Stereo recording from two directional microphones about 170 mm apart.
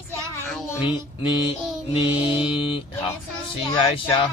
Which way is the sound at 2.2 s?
30° left (ahead or behind).